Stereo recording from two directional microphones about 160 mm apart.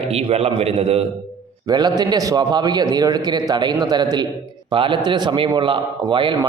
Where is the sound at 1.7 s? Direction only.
25° right (ahead or behind).